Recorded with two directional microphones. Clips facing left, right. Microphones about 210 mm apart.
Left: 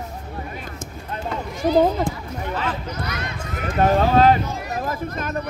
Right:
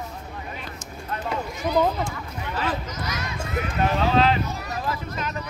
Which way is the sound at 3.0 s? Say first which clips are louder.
Left 2 dB; 60° left (ahead or behind).